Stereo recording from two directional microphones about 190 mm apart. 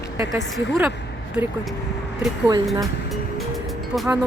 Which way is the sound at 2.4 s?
20° right (ahead or behind).